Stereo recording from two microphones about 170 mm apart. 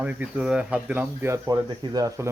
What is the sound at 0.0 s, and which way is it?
Speech, 10° right (ahead or behind).